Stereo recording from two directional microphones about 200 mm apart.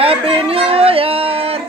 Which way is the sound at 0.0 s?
30° right (ahead or behind).